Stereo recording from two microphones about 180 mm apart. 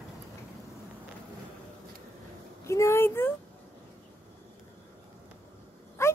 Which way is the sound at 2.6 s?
15° left (ahead or behind).